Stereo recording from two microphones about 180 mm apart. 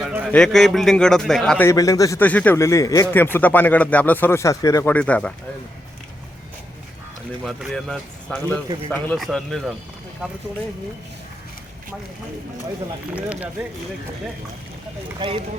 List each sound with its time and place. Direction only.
0.0 s a man's voice: 10° right (ahead or behind)
0.3 s a man's voice: 5° left (ahead or behind)
1.6 s a man's voice: 20° left (ahead or behind)
7.4 s a man's voice: centre (ahead or behind)
13.1 s speech: 10° right (ahead or behind)
15.2 s speech: 25° right (ahead or behind)